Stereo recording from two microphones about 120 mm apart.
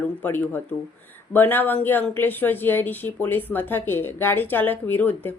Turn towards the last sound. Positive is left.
turn(degrees=15)  # may be behind; listen again after turning